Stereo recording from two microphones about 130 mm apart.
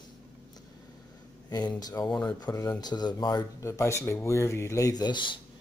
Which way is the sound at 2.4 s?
25° left (ahead or behind).